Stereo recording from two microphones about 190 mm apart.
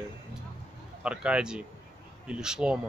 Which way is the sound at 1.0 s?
5° right (ahead or behind).